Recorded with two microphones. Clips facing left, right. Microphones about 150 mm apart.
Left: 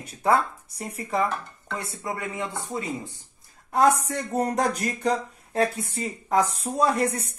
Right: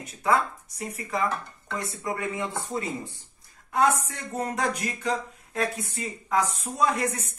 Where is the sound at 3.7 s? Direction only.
35° left (ahead or behind).